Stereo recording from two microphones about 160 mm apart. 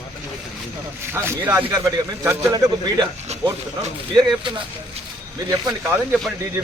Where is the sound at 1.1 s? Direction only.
15° right (ahead or behind).